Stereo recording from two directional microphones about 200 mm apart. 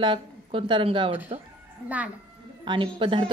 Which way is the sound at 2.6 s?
25° right (ahead or behind).